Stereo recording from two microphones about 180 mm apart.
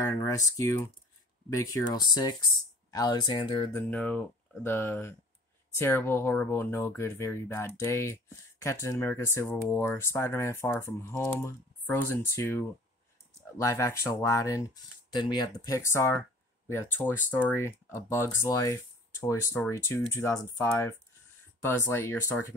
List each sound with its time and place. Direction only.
0.1 s speech: 15° left (ahead or behind)
3.9 s speech: 5° left (ahead or behind)